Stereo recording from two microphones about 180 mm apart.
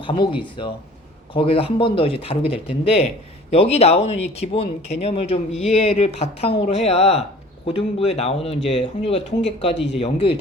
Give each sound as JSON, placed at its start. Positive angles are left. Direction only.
{"t": 0.0, "sound": "speech", "side_deg": 30}